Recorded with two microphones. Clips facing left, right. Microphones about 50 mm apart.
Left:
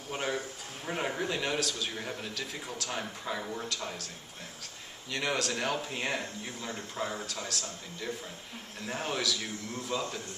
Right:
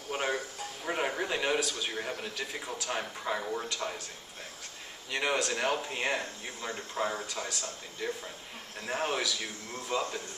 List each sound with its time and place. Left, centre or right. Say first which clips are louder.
0.1 s music: right 2 dB; centre
0.8 s speech: right 1 dB; centre
5.1 s speech: right 2 dB; centre